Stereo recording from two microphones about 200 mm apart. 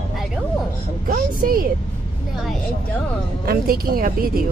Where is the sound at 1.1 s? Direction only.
45° right (ahead or behind).